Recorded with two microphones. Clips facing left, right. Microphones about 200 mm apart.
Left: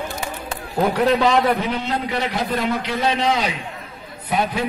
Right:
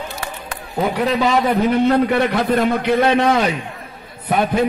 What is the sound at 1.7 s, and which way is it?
A man's voice, 55° right (ahead or behind).